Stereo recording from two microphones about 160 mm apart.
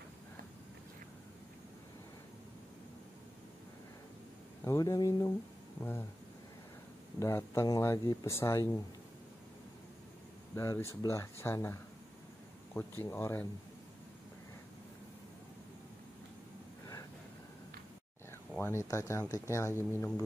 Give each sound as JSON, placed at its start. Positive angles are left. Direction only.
{"t": 4.6, "sound": "speech", "side_deg": 20}
{"t": 7.2, "sound": "speech", "side_deg": 15}
{"t": 10.5, "sound": "speech", "side_deg": 20}
{"t": 12.7, "sound": "speech", "side_deg": 15}
{"t": 18.6, "sound": "speech", "side_deg": 15}